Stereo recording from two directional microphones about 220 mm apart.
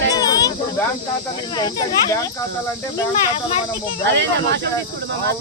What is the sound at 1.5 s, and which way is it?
Speech, 15° left (ahead or behind).